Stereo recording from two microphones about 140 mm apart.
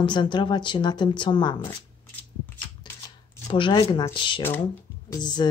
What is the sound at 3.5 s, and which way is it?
A woman's voice, 35° left (ahead or behind).